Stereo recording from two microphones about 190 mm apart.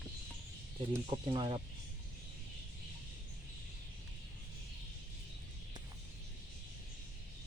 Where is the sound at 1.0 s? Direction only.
25° right (ahead or behind).